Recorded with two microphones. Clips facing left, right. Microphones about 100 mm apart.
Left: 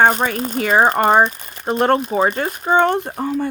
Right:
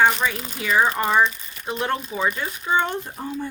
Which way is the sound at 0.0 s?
45° left (ahead or behind).